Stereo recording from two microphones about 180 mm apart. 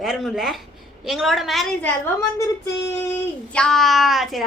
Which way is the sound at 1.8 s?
15° left (ahead or behind).